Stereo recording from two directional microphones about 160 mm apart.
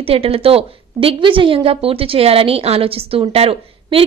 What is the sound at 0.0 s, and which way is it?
A woman's voice, 35° right (ahead or behind).